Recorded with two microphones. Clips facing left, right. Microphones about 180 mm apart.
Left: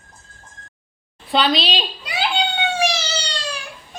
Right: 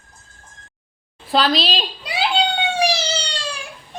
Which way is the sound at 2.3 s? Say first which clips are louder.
Right 2 dB; 35° right (ahead or behind).